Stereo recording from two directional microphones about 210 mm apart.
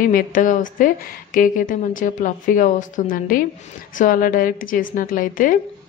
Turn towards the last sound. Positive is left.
turn(degrees=40)  # may be behind; listen again after turning